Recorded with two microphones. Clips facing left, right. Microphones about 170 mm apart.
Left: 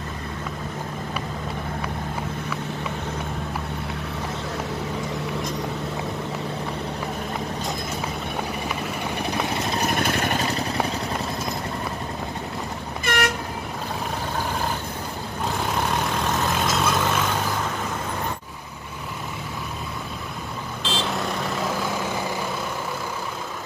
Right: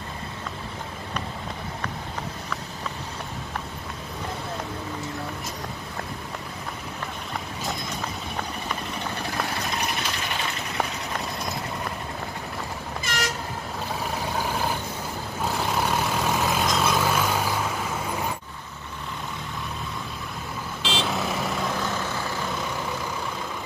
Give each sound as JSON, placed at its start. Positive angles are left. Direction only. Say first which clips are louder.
{"t": 9.8, "sound": "vehicle", "louder": "left 7 dB", "side_deg": 50}
{"t": 13.0, "sound": "train", "louder": "left 7 dB", "side_deg": 60}
{"t": 15.4, "sound": "vehicle", "louder": "even", "side_deg": 0}
{"t": 20.9, "sound": "vehicle", "louder": "even", "side_deg": 0}